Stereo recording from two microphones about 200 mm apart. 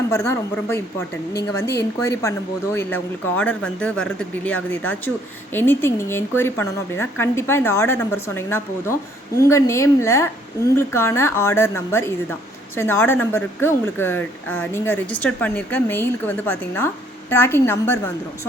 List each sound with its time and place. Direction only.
0.1 s speech: 15° left (ahead or behind)